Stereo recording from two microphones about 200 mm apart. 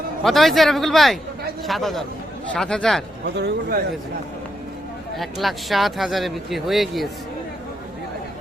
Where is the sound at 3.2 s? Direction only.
55° right (ahead or behind).